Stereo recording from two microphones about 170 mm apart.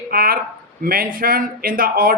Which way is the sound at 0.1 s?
60° right (ahead or behind).